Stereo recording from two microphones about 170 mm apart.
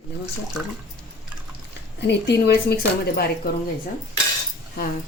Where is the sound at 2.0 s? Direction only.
80° left.